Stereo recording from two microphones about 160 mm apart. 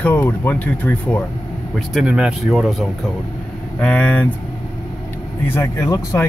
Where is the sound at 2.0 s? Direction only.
5° right (ahead or behind).